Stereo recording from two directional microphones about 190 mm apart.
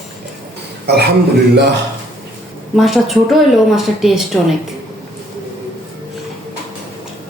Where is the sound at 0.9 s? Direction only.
60° right (ahead or behind).